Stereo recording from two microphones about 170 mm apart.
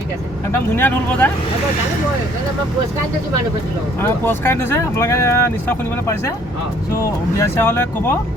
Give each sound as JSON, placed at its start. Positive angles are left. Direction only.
{"t": 0.8, "sound": "speech", "side_deg": 10}
{"t": 4.0, "sound": "speech", "side_deg": 15}
{"t": 7.3, "sound": "speech", "side_deg": 15}